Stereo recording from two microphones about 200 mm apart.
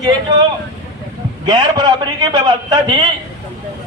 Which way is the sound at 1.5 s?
20° right (ahead or behind).